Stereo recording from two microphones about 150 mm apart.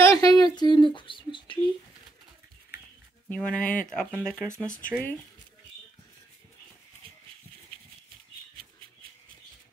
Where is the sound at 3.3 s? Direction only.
10° left (ahead or behind).